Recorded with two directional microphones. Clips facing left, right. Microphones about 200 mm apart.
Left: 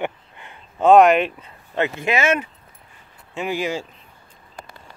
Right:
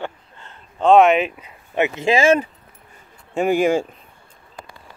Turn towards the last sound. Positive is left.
turn(degrees=-50)  # may be behind; listen again after turning